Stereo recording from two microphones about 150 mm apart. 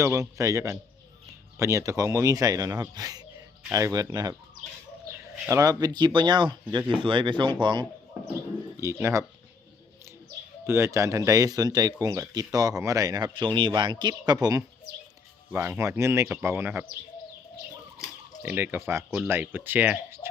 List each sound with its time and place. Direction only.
0.0 s speech: 20° right (ahead or behind)
5.5 s speech: 20° right (ahead or behind)
8.8 s speech: 20° right (ahead or behind)
10.7 s speech: 15° right (ahead or behind)
15.5 s speech: 15° right (ahead or behind)
18.4 s speech: 10° right (ahead or behind)